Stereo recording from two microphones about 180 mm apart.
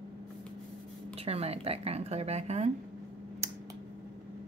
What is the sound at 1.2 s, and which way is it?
A woman's voice, 35° right (ahead or behind).